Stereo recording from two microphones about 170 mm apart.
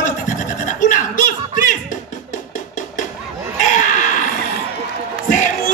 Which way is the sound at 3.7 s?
50° left (ahead or behind).